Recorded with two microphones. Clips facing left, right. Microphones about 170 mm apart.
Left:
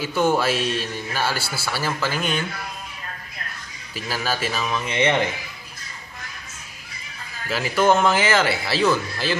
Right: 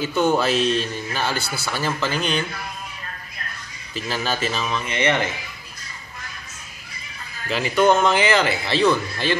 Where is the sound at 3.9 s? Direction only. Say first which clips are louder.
Right 1 dB; 5° left (ahead or behind).